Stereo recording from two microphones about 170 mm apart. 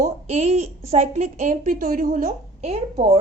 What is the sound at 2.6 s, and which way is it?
Speech, 35° right (ahead or behind).